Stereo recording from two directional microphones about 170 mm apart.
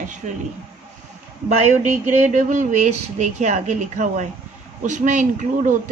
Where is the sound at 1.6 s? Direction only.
45° right (ahead or behind).